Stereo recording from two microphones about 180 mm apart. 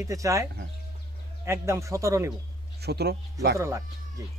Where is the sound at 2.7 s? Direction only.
65° right (ahead or behind).